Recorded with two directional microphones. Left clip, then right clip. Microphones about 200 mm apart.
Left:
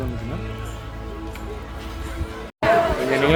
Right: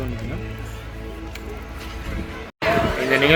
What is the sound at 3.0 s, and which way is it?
Speech, centre (ahead or behind).